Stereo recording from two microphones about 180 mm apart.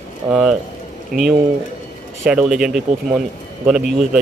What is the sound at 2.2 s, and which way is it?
Speech, 5° right (ahead or behind).